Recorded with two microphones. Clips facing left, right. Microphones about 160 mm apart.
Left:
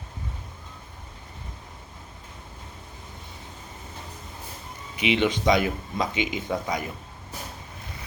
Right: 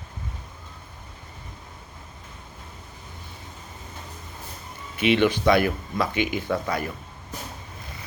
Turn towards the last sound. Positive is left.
turn(degrees=20)  # may be behind; listen again after turning